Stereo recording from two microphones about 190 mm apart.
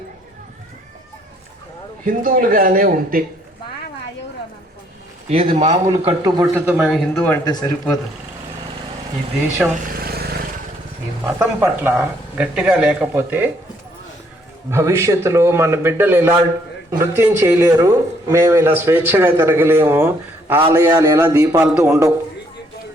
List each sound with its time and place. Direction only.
2.0 s a man's voice: 45° right (ahead or behind)
5.3 s a man's voice: 30° right (ahead or behind)
6.2 s speech: 20° right (ahead or behind)
6.7 s speech: centre (ahead or behind)
7.1 s speech: 10° left (ahead or behind)
7.4 s speech: 20° left (ahead or behind)
9.9 s vehicle: 55° right (ahead or behind)
11.3 s speech: 10° right (ahead or behind)
14.7 s a man's voice: 15° right (ahead or behind)